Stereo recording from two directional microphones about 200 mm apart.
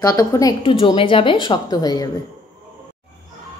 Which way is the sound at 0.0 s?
15° left (ahead or behind).